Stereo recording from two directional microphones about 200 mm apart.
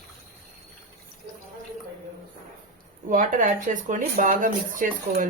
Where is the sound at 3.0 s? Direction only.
40° right (ahead or behind).